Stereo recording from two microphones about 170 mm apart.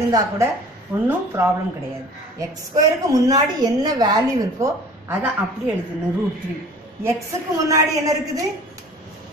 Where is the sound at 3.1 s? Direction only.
20° right (ahead or behind).